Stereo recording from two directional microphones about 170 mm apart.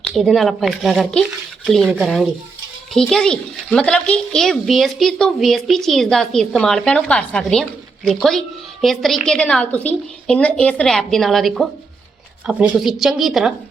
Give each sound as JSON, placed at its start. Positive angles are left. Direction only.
{"t": 0.1, "sound": "a child's voice", "side_deg": 0}